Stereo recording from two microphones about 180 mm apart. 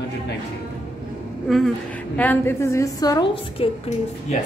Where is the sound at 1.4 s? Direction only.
Centre (ahead or behind); by 3.7 s 25° left (ahead or behind).